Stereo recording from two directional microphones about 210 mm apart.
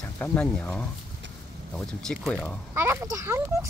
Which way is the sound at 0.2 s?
10° left (ahead or behind).